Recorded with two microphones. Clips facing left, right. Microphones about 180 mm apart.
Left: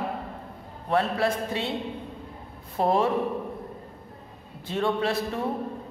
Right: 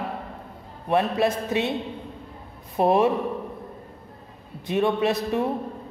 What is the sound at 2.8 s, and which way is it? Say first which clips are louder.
Speech: right 4 dB; 20° right (ahead or behind).